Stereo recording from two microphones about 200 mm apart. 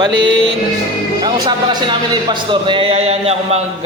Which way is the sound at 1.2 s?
20° right (ahead or behind).